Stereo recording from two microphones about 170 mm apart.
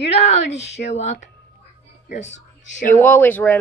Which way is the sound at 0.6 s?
90° left.